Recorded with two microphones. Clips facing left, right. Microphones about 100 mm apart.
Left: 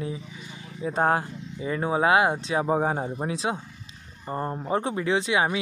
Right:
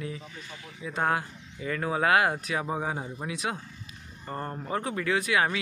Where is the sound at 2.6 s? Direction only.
40° left (ahead or behind).